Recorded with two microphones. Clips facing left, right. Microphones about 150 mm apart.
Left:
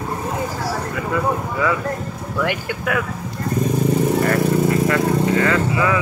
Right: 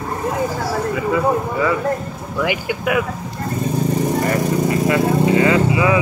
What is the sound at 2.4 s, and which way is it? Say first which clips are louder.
Speech: right 2 dB; 10° right (ahead or behind).